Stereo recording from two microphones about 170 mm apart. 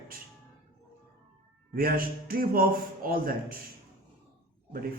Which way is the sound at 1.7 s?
60° right (ahead or behind).